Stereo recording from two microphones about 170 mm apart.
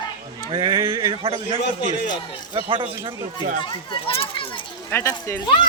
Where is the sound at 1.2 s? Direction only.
30° right (ahead or behind).